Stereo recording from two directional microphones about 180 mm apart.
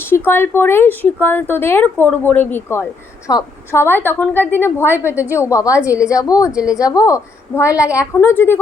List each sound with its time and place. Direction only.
0.0 s a woman's voice: 10° left (ahead or behind)
6.6 s a woman's voice: 5° right (ahead or behind)
6.8 s speech: 20° left (ahead or behind)